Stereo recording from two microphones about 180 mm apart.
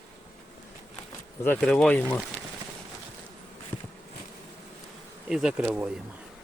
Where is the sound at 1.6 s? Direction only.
5° left (ahead or behind).